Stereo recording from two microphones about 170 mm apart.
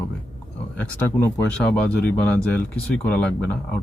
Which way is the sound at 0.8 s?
10° left (ahead or behind).